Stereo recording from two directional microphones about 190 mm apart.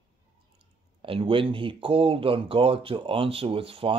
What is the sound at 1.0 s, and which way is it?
Speech, 30° right (ahead or behind).